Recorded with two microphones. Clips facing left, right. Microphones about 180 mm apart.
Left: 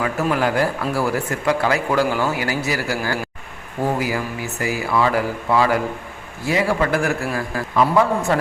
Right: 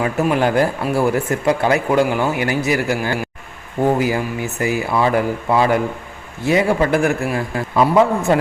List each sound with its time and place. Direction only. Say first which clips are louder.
0.0 s speech: right 3 dB; 20° right (ahead or behind)